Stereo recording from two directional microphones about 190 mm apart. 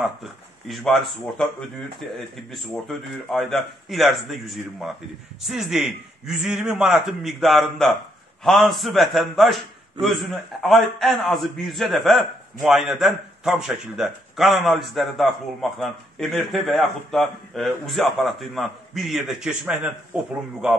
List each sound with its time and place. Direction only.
0.0 s a man's voice: centre (ahead or behind)